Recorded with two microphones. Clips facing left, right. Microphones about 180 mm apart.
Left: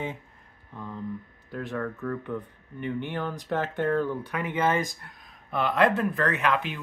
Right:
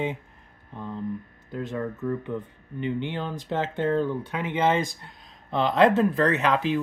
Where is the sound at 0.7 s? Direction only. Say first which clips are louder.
Right 3 dB; 20° right (ahead or behind).